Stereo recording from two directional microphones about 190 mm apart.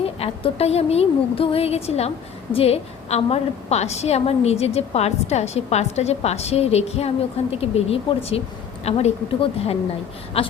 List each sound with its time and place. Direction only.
0.0 s a woman's voice: 30° left (ahead or behind)